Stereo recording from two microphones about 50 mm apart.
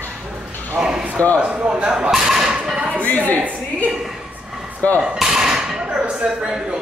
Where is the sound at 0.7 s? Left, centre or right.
Centre.